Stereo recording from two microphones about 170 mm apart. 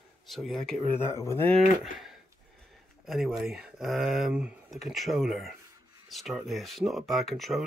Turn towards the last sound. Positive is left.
turn(degrees=0)  # may be behind; listen again after turning